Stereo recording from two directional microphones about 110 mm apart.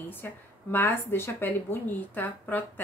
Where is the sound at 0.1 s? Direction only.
20° left (ahead or behind).